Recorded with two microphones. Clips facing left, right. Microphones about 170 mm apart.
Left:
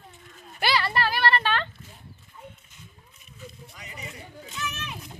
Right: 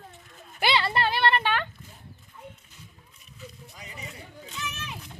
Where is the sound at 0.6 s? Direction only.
25° right (ahead or behind).